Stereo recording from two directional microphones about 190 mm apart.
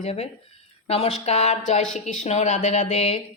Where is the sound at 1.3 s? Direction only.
35° left (ahead or behind).